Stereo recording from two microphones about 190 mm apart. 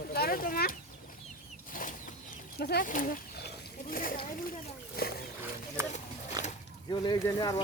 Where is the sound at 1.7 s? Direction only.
45° left (ahead or behind).